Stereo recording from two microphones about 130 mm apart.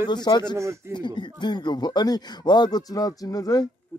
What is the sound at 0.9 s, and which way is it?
Speech, 35° left (ahead or behind).